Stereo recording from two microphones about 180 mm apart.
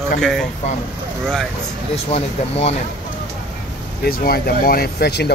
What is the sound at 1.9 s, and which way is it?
Speech, 35° left (ahead or behind).